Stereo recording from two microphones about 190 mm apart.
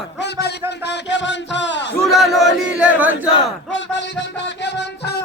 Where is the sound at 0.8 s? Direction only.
70° left (ahead or behind).